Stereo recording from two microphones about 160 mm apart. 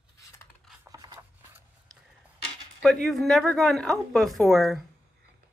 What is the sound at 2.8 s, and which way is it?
Speech, centre (ahead or behind).